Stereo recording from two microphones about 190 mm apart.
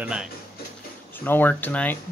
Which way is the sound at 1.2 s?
10° left (ahead or behind).